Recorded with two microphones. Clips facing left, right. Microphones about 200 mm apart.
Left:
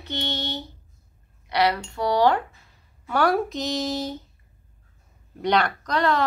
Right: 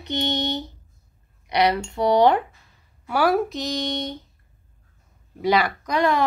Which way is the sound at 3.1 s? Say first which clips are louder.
Right 1 dB; 5° right (ahead or behind).